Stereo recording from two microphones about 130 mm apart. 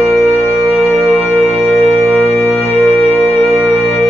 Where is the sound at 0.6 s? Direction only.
Centre (ahead or behind).